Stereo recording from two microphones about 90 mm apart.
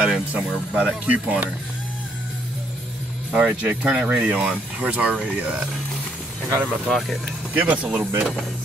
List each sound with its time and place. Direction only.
0.0 s speech: 10° right (ahead or behind)
3.3 s speech: 15° right (ahead or behind)
6.7 s speech: centre (ahead or behind)
7.5 s speech: 15° right (ahead or behind)